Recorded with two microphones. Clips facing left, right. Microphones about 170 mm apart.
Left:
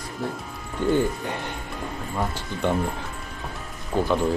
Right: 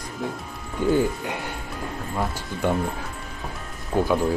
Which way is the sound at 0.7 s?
5° right (ahead or behind).